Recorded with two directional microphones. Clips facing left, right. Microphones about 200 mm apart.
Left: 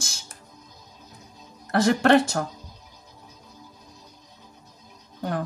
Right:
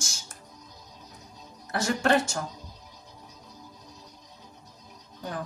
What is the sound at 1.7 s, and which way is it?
Speech, 60° left (ahead or behind).